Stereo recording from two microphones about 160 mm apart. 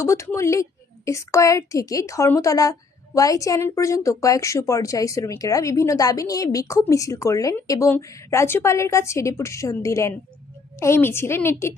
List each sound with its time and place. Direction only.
0.0 s a woman's voice: 15° left (ahead or behind)